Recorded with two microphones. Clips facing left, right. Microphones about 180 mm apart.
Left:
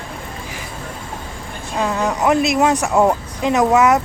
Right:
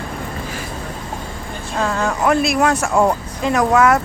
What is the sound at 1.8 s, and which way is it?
Speech, 15° left (ahead or behind).